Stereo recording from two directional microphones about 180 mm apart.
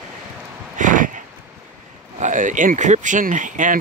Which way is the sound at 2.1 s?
45° right (ahead or behind).